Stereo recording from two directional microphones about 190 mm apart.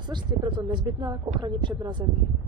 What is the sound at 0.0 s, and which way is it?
A woman's voice, 25° right (ahead or behind).